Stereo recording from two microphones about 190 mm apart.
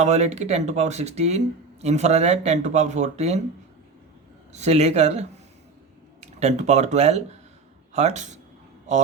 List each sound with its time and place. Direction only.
0.0 s speech: 35° right (ahead or behind)
4.5 s speech: 35° right (ahead or behind)